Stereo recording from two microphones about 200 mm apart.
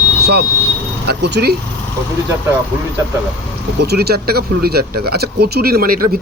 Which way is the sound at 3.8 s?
55° right (ahead or behind).